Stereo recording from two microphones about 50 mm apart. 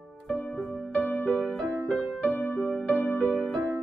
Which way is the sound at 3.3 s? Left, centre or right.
Centre.